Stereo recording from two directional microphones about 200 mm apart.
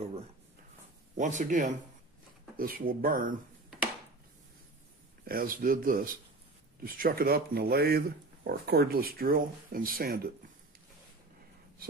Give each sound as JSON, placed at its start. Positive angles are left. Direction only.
{"t": 1.1, "sound": "speech", "side_deg": -40}
{"t": 5.2, "sound": "speech", "side_deg": -45}